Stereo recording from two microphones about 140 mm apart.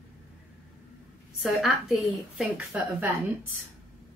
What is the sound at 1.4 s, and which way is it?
Speech, 5° right (ahead or behind).